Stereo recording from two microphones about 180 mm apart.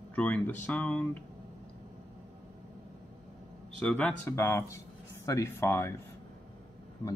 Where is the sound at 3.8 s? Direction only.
5° left (ahead or behind).